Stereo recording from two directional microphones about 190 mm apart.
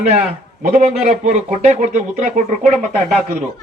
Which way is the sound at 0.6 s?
40° right (ahead or behind).